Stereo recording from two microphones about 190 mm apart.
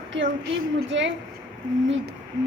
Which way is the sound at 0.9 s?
75° right (ahead or behind).